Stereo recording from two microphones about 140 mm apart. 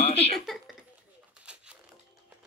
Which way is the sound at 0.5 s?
Centre (ahead or behind).